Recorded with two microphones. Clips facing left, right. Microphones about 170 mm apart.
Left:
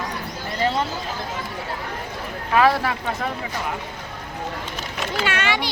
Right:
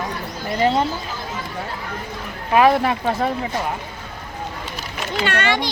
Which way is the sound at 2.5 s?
20° right (ahead or behind).